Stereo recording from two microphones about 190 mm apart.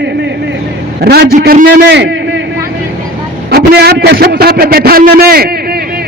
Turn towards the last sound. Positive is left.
turn(degrees=-55)  # may be behind; listen again after turning